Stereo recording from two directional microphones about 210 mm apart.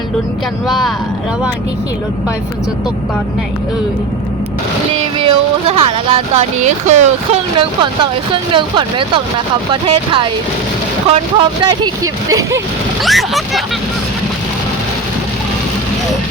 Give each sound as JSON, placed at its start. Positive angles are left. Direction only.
{"t": 0.7, "sound": "speech", "side_deg": 0}
{"t": 5.2, "sound": "speech", "side_deg": -25}
{"t": 8.3, "sound": "speech", "side_deg": -20}
{"t": 13.0, "sound": "speech", "side_deg": 0}